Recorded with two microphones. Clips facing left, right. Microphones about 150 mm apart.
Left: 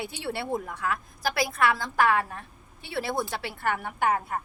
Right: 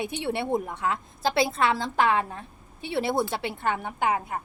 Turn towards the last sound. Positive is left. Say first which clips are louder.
# even
turn(degrees=-15)  # may be behind; listen again after turning